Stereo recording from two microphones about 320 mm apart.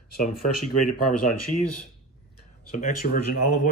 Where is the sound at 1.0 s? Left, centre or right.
Left.